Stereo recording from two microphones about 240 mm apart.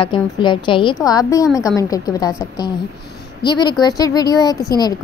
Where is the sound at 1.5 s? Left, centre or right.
Centre.